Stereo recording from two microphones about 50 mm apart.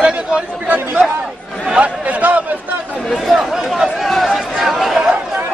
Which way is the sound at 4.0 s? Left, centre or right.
Centre.